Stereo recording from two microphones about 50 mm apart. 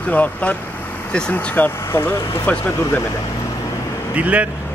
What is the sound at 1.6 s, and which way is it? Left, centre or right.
Speech, left.